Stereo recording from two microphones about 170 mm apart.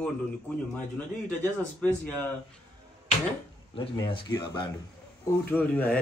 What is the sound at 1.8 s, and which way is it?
Speech, 10° left (ahead or behind).